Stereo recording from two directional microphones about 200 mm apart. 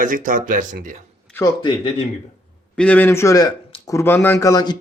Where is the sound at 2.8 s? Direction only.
10° left (ahead or behind).